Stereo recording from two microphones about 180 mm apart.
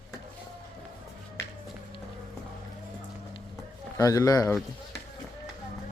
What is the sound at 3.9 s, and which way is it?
Speech, 20° left (ahead or behind).